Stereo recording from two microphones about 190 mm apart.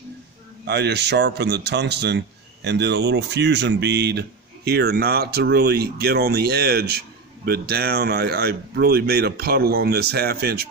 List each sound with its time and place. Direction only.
0.7 s speech: 60° right (ahead or behind)